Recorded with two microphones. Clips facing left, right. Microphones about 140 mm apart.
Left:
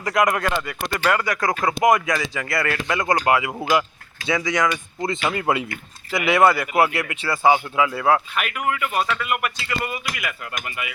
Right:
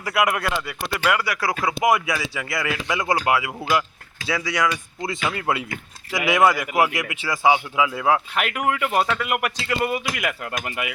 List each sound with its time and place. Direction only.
0.0 s speech: 5° right (ahead or behind)
6.1 s speech: 10° right (ahead or behind)
8.6 s speech: 70° right (ahead or behind)